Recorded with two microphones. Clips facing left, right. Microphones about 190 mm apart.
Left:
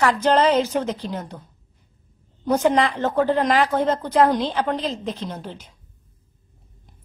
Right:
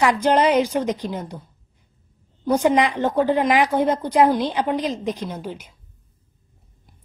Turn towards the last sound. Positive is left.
turn(degrees=-10)  # may be behind; listen again after turning